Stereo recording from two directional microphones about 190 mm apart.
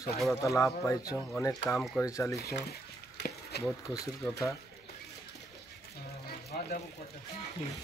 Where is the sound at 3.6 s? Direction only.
15° left (ahead or behind).